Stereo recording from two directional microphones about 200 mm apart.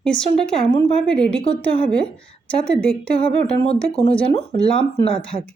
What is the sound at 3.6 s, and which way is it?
Speech, 30° left (ahead or behind).